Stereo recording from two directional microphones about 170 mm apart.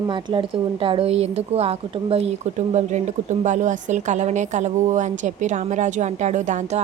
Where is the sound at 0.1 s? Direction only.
30° right (ahead or behind).